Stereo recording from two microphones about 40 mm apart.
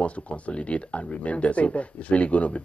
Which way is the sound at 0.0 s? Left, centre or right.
Left.